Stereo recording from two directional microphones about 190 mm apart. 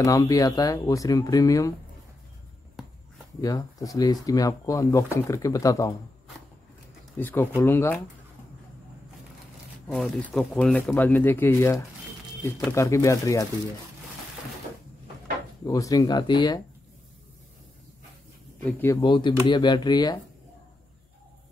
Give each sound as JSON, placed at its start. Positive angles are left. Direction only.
{"t": 0.0, "sound": "speech", "side_deg": 15}
{"t": 3.3, "sound": "speech", "side_deg": 20}
{"t": 7.2, "sound": "speech", "side_deg": 10}
{"t": 9.8, "sound": "speech", "side_deg": 0}
{"t": 15.6, "sound": "speech", "side_deg": 15}
{"t": 18.6, "sound": "speech", "side_deg": 10}